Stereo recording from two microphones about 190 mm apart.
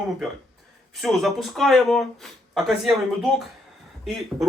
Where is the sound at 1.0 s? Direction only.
Centre (ahead or behind).